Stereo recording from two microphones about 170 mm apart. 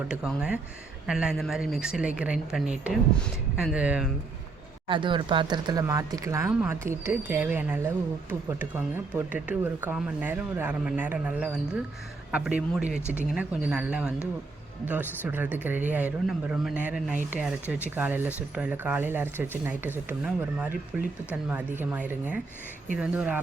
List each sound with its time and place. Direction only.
0.3 s speech: 5° right (ahead or behind)
4.9 s speech: 30° right (ahead or behind); by 13.0 s 5° right (ahead or behind)
13.0 s speech: 15° left (ahead or behind)
13.3 s speech: 10° right (ahead or behind)